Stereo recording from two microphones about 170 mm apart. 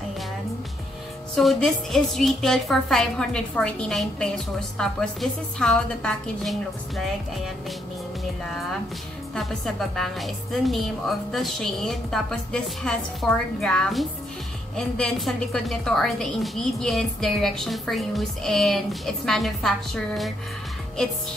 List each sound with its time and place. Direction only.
1.3 s a woman's voice: centre (ahead or behind)
9.3 s a woman's voice: 5° left (ahead or behind)